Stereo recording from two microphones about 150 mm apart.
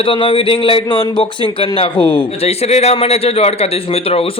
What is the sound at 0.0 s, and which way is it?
A man's voice, 35° left (ahead or behind).